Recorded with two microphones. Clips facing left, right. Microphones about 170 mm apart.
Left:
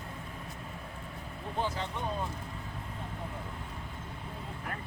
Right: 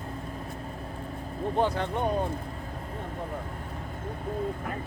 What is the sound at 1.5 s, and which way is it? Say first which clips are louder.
Speech: right 7 dB; 60° right (ahead or behind).